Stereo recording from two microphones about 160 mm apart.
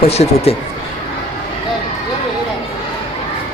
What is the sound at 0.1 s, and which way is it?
Speech, 40° left (ahead or behind).